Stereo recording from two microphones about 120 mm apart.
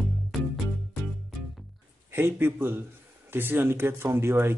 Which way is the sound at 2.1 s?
20° right (ahead or behind).